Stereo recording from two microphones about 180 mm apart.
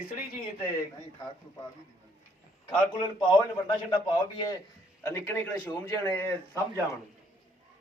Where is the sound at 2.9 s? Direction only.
25° left (ahead or behind).